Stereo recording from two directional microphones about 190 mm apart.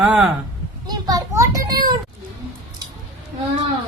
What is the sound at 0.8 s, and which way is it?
Children playing, 20° right (ahead or behind).